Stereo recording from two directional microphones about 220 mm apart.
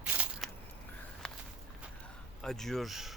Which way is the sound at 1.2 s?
5° left (ahead or behind).